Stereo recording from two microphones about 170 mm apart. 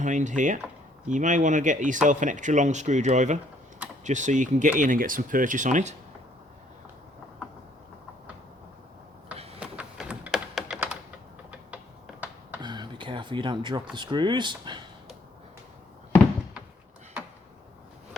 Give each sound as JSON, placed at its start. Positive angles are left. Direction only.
{"t": 0.0, "sound": "speech", "side_deg": -45}
{"t": 9.6, "sound": "typing", "side_deg": -5}
{"t": 12.6, "sound": "a sound", "side_deg": -25}
{"t": 13.9, "sound": "speech", "side_deg": -25}